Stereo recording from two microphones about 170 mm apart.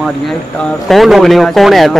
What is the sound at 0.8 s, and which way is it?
A man's voice, centre (ahead or behind).